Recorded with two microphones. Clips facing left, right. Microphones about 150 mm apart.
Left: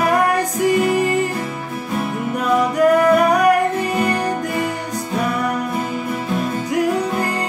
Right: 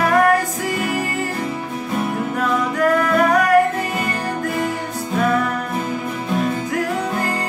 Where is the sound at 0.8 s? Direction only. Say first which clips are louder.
Left 6 dB; 20° left (ahead or behind).